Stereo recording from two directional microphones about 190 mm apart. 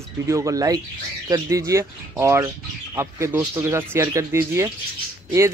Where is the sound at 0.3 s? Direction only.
15° right (ahead or behind).